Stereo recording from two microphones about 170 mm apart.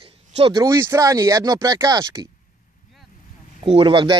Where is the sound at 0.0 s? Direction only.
30° right (ahead or behind).